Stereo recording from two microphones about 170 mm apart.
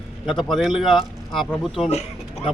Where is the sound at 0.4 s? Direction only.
Centre (ahead or behind).